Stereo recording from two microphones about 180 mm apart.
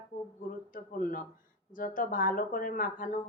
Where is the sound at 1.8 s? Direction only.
50° left (ahead or behind).